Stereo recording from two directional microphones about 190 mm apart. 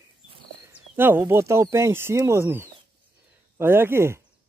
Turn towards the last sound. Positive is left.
turn(degrees=-15)  # may be behind; listen again after turning